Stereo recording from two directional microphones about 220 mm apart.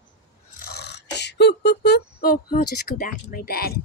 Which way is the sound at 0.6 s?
50° left (ahead or behind).